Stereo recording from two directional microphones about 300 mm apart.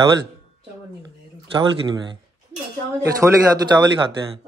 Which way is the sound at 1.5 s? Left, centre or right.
Centre.